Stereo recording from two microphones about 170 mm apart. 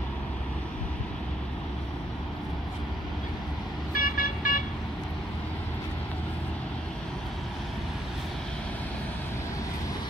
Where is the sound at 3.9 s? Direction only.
55° left (ahead or behind).